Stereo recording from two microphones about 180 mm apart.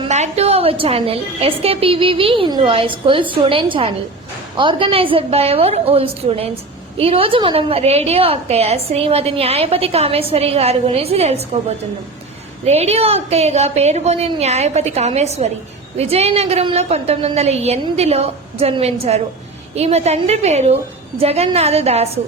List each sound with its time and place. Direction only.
0.0 s a woman's voice: 35° right (ahead or behind)
12.6 s a woman's voice: 35° right (ahead or behind)